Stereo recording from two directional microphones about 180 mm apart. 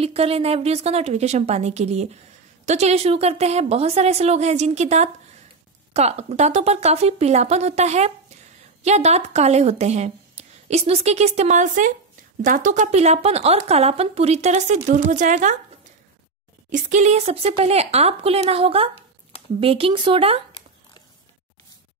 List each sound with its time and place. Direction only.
0.0 s a woman's voice: 35° right (ahead or behind)
16.7 s a woman's voice: 40° right (ahead or behind)